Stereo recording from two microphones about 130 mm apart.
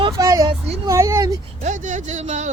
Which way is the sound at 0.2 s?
25° right (ahead or behind).